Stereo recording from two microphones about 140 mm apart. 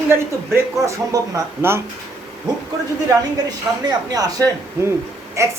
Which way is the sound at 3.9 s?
25° right (ahead or behind).